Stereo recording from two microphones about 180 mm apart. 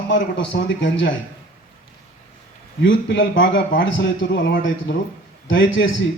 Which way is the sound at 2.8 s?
90° left.